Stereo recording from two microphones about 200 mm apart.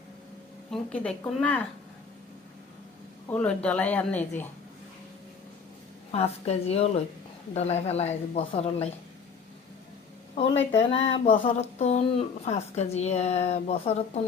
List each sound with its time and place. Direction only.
0.7 s a woman's voice: 5° left (ahead or behind)
3.2 s speech: 5° left (ahead or behind)
6.1 s speech: 30° left (ahead or behind)
10.7 s speech: 30° left (ahead or behind)